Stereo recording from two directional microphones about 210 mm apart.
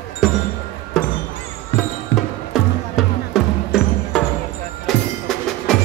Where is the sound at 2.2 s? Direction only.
Centre (ahead or behind).